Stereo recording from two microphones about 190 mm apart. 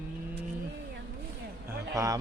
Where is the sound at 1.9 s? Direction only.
20° right (ahead or behind).